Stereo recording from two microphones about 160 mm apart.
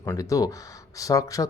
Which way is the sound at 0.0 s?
20° left (ahead or behind).